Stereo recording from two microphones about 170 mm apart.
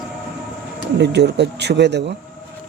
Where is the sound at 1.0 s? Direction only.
85° right.